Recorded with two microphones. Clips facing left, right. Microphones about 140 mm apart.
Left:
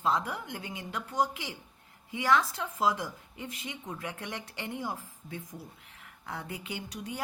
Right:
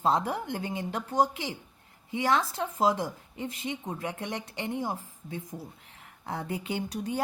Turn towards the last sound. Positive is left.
turn(degrees=-30)  # may be behind; listen again after turning